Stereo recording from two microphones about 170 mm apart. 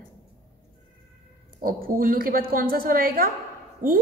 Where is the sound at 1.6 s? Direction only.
55° right (ahead or behind).